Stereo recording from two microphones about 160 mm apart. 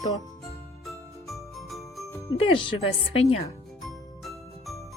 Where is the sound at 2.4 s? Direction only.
30° left (ahead or behind).